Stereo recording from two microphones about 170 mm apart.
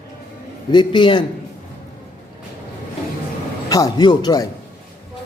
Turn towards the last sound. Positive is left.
turn(degrees=25)  # may be behind; listen again after turning